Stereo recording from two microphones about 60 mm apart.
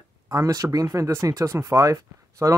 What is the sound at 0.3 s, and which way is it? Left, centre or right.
A man's voice, right.